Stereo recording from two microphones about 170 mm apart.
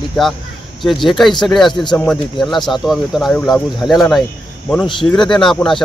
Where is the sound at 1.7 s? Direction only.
25° left (ahead or behind).